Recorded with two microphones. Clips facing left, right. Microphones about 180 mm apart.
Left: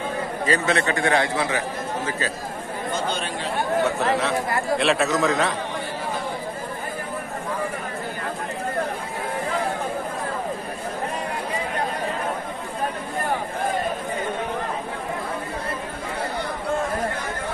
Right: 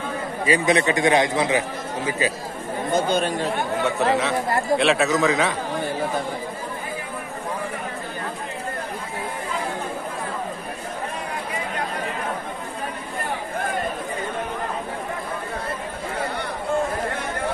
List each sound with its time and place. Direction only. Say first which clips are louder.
0.5 s a man's voice: right 3 dB; 15° right (ahead or behind)
3.1 s speech: right 6 dB; 45° right (ahead or behind)
3.8 s a man's voice: right 4 dB; centre (ahead or behind)